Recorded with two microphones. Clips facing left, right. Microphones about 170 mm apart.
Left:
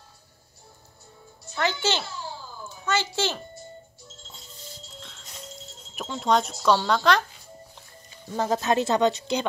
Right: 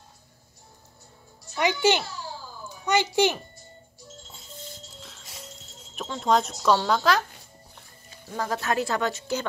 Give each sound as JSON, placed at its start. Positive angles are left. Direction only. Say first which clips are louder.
{"t": 1.6, "sound": "speech", "louder": "right 4 dB", "side_deg": -15}
{"t": 5.9, "sound": "speech", "louder": "even", "side_deg": 5}
{"t": 8.4, "sound": "speech", "louder": "left 3 dB", "side_deg": 20}